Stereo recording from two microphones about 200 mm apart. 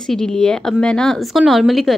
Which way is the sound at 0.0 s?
5° left (ahead or behind).